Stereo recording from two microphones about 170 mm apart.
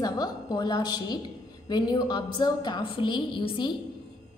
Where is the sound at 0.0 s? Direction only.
25° left (ahead or behind).